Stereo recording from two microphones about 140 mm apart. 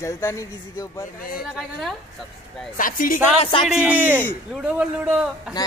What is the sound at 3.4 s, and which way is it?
Music, 40° left (ahead or behind).